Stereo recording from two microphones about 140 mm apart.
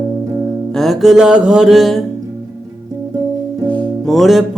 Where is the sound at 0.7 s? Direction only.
Centre (ahead or behind).